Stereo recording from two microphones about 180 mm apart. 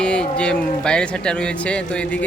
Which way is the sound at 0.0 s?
5° left (ahead or behind).